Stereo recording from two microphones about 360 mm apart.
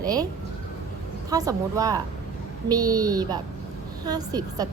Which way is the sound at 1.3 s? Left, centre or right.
Centre.